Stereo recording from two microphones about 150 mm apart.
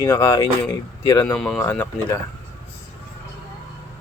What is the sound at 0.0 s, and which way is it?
A man's voice, 15° left (ahead or behind).